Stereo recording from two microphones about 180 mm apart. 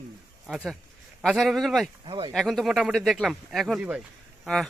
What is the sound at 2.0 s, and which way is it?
Speech, 30° right (ahead or behind).